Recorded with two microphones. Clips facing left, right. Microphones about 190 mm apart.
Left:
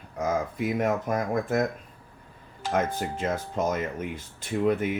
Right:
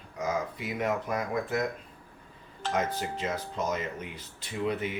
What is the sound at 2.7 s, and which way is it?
Speech, 50° left (ahead or behind).